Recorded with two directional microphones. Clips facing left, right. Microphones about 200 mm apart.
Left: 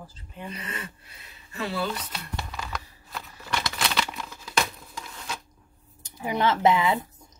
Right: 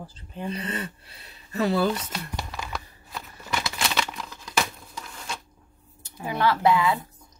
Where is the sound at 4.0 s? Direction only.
Centre (ahead or behind).